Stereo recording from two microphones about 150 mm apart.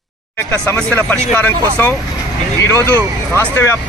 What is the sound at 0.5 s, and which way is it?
Speech, 10° left (ahead or behind).